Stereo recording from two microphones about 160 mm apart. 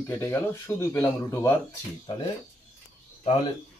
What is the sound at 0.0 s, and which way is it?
Speech, 15° left (ahead or behind).